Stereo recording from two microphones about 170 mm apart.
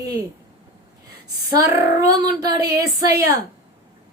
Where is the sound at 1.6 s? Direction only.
20° right (ahead or behind).